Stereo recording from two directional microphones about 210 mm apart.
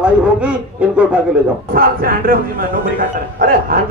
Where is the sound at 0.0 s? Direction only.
5° right (ahead or behind).